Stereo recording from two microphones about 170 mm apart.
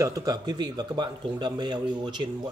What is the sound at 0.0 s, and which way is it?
Speech, 20° right (ahead or behind).